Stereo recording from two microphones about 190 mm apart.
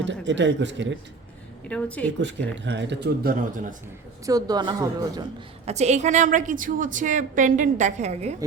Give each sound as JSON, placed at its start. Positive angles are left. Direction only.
{"t": 0.0, "sound": "a man's voice", "side_deg": -70}
{"t": 1.6, "sound": "a woman's voice", "side_deg": 5}
{"t": 2.2, "sound": "speech", "side_deg": -70}
{"t": 4.3, "sound": "speech", "side_deg": -20}
{"t": 5.6, "sound": "a woman's voice", "side_deg": -35}